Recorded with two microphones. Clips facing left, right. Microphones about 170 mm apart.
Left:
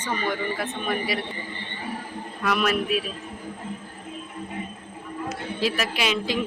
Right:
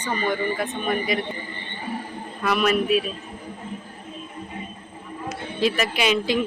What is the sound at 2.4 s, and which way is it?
Speech, centre (ahead or behind).